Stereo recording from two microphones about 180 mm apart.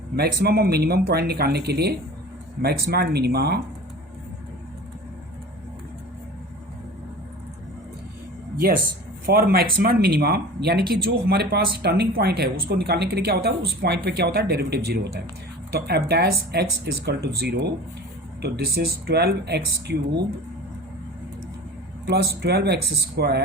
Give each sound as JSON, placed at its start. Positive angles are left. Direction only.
{"t": 0.2, "sound": "speech", "side_deg": -60}
{"t": 9.2, "sound": "speech", "side_deg": -55}
{"t": 18.4, "sound": "speech", "side_deg": -60}
{"t": 22.0, "sound": "speech", "side_deg": -65}